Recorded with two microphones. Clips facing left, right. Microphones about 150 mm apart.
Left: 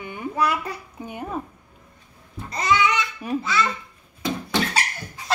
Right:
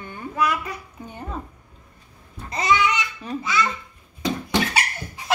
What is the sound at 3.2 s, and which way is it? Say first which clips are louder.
Speech: left 5 dB; 10° left (ahead or behind).